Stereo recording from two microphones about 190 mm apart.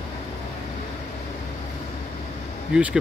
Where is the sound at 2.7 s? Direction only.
5° right (ahead or behind).